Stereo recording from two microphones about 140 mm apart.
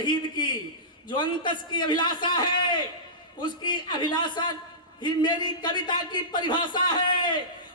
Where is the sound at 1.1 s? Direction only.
35° left (ahead or behind).